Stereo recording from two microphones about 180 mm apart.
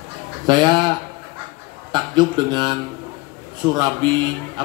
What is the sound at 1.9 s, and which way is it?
A man's voice, 25° right (ahead or behind).